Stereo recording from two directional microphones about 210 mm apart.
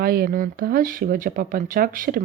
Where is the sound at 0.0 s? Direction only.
45° right (ahead or behind).